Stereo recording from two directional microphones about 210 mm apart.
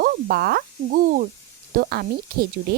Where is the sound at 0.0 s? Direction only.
45° right (ahead or behind).